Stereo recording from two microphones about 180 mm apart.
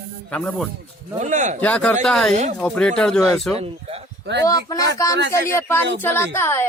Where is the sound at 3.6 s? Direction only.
35° right (ahead or behind).